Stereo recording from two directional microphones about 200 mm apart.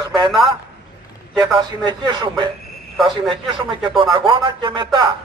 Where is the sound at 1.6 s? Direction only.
20° right (ahead or behind).